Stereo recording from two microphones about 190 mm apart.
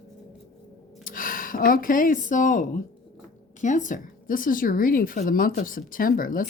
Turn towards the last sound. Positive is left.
turn(degrees=45)  # may be behind; listen again after turning